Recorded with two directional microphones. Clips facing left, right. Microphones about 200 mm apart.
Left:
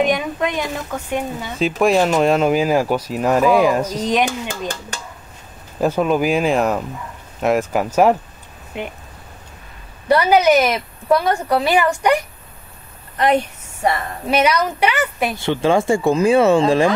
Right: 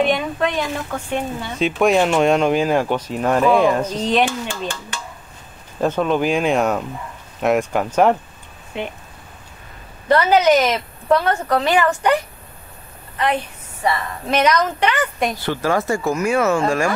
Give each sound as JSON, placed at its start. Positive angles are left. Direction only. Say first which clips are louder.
{"t": 0.0, "sound": "speech", "louder": "even", "side_deg": 10}
{"t": 4.3, "sound": "speech", "louder": "left 1 dB", "side_deg": 40}
{"t": 5.8, "sound": "speech", "louder": "left 1 dB", "side_deg": 5}
{"t": 10.0, "sound": "speech", "louder": "left 1 dB", "side_deg": 10}
{"t": 14.2, "sound": "speech", "louder": "even", "side_deg": 10}
{"t": 15.3, "sound": "speech", "louder": "left 7 dB", "side_deg": 25}